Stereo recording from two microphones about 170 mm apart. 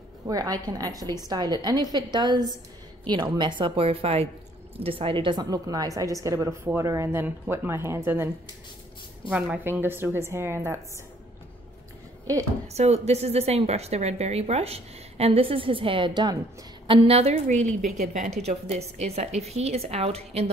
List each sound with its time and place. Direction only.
0.3 s a woman's voice: 20° right (ahead or behind)
9.3 s speech: 10° right (ahead or behind)
12.6 s a woman's voice: 40° right (ahead or behind)